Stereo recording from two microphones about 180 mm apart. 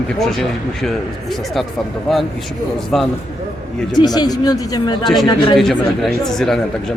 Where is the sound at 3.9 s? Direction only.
20° left (ahead or behind).